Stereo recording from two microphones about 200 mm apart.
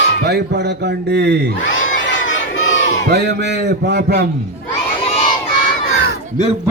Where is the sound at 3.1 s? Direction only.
55° right (ahead or behind).